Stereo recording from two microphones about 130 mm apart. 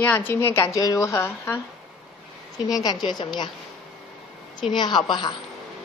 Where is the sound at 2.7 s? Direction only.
30° left (ahead or behind).